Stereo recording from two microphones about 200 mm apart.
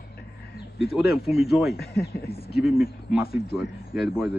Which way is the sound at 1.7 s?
50° left (ahead or behind).